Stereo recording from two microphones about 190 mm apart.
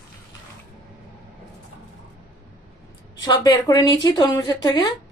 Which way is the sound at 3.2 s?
20° left (ahead or behind).